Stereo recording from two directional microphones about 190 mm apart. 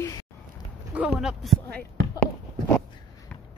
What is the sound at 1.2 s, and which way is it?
Speech, centre (ahead or behind).